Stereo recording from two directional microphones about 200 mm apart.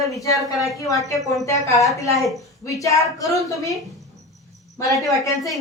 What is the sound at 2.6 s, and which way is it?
A woman's voice, 15° left (ahead or behind).